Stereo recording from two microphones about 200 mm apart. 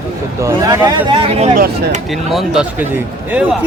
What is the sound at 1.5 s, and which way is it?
Speech, 40° right (ahead or behind).